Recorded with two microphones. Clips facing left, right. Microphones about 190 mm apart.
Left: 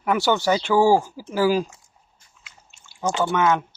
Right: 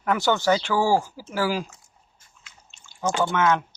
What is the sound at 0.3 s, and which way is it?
Speech, 15° left (ahead or behind).